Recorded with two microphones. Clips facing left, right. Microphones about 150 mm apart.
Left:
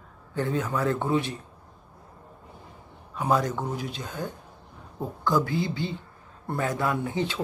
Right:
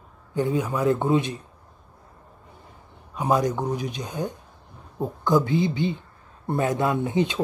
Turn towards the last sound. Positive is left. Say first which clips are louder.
# right 4 dB
turn(degrees=-20)  # may be behind; listen again after turning